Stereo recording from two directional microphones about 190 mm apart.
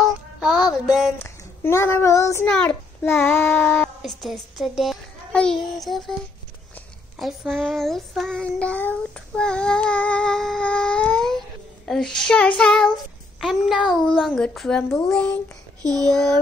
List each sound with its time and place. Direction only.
0.0 s child singing: centre (ahead or behind)
1.1 s child singing: 15° left (ahead or behind)
7.2 s child singing: centre (ahead or behind)
15.8 s a sound: 20° right (ahead or behind)